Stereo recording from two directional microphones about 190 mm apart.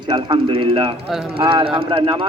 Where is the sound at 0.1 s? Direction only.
30° right (ahead or behind).